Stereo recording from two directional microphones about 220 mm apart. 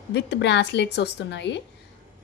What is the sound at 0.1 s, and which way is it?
Speech, 50° left (ahead or behind).